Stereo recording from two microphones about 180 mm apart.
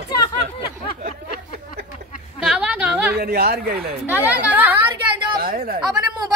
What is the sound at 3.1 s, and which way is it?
Speech, 60° right (ahead or behind).